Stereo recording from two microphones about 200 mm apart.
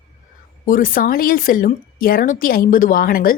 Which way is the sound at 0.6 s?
45° left (ahead or behind).